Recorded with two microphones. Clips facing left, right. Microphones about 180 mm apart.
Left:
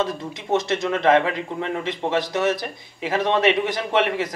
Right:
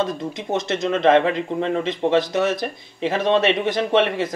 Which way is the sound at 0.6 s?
20° right (ahead or behind).